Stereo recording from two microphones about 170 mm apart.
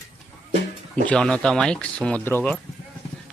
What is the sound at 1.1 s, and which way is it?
Speech, 5° left (ahead or behind).